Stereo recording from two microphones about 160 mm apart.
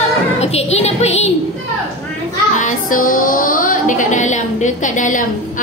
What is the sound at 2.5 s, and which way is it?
Speech, 55° left (ahead or behind).